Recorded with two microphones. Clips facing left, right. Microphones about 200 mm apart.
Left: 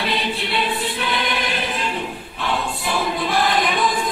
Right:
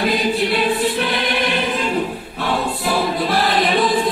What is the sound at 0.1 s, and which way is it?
Choir, 50° right (ahead or behind).